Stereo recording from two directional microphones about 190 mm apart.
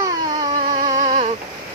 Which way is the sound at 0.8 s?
40° right (ahead or behind).